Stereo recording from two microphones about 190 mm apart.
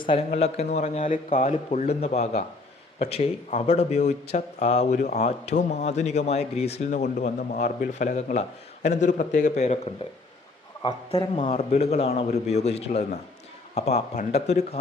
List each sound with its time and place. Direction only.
0.0 s a man's voice: 25° left (ahead or behind)